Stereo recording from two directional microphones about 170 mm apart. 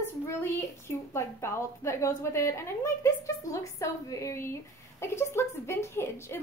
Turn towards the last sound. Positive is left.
turn(degrees=15)  # may be behind; listen again after turning